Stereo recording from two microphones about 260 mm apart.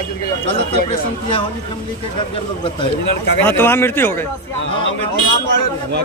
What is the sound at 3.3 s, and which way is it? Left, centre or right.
Speech, centre.